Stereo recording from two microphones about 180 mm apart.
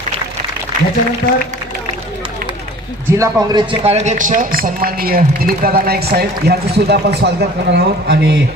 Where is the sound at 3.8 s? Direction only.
35° right (ahead or behind); by 8.3 s 65° right (ahead or behind).